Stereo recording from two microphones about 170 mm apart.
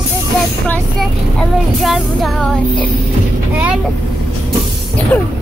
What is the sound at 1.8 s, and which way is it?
Music, centre (ahead or behind).